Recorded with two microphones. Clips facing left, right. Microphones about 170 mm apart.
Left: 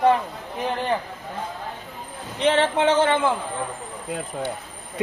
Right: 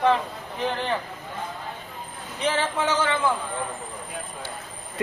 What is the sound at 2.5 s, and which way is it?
Speech, 30° left (ahead or behind).